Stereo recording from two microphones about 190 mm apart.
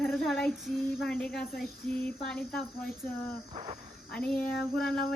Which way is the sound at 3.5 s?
35° right (ahead or behind).